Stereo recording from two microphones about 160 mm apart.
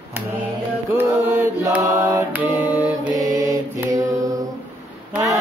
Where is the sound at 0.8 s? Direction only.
15° right (ahead or behind).